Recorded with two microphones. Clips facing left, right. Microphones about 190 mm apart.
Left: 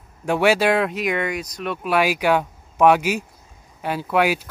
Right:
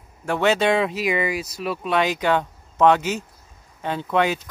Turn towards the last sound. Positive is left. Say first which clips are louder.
# left 1 dB
turn(degrees=10)  # may be behind; listen again after turning